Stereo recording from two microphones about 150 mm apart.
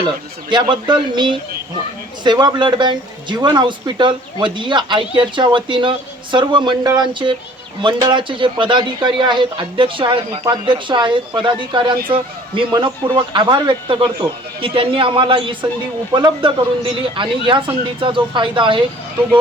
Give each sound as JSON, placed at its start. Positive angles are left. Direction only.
{"t": 0.5, "sound": "speech", "side_deg": -30}